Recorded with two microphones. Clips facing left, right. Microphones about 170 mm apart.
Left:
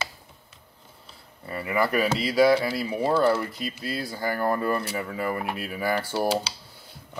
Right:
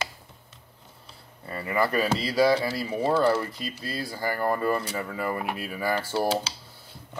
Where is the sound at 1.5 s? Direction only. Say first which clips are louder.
Left 1 dB; 10° left (ahead or behind).